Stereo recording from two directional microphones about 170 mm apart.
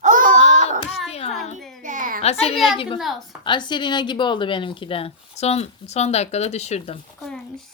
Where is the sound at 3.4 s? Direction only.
25° left (ahead or behind).